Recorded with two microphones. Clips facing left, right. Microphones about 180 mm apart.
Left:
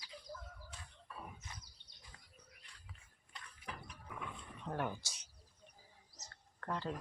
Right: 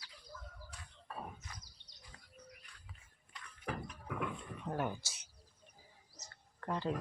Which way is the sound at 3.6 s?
65° right (ahead or behind).